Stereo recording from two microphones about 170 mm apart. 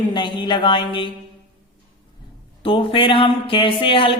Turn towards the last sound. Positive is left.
turn(degrees=30)  # may be behind; listen again after turning